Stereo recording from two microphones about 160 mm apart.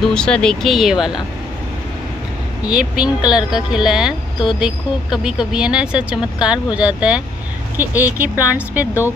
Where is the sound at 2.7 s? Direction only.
5° right (ahead or behind).